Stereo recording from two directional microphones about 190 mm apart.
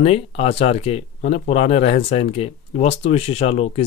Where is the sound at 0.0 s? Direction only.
35° left (ahead or behind).